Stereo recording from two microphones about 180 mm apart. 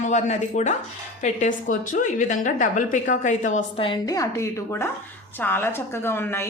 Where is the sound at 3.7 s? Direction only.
30° left (ahead or behind).